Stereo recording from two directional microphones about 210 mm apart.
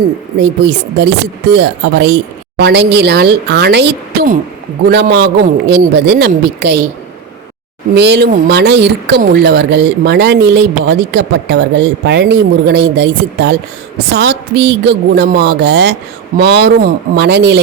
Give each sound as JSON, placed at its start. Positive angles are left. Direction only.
{"t": 0.3, "sound": "speech", "side_deg": -55}
{"t": 7.9, "sound": "speech", "side_deg": -55}